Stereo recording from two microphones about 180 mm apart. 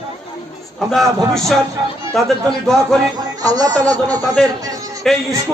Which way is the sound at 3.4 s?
20° right (ahead or behind).